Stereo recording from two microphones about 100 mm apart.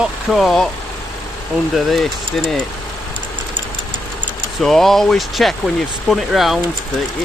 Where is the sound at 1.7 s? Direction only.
Centre (ahead or behind).